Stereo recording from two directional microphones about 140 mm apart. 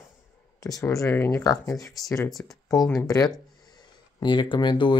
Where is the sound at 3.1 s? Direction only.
25° left (ahead or behind).